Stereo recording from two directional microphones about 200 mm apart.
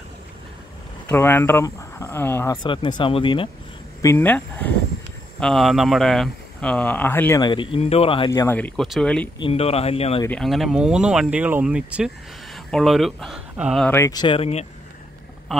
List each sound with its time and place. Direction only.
1.0 s speech: 10° left (ahead or behind)
2.5 s speech: 25° left (ahead or behind)
4.0 s speech: 10° left (ahead or behind); by 8.3 s 30° left (ahead or behind)
8.3 s speech: 15° left (ahead or behind)
9.4 s speech: 30° left (ahead or behind)
10.2 s speech: 5° left (ahead or behind)
13.8 s speech: 15° left (ahead or behind); by 14.7 s 30° left (ahead or behind)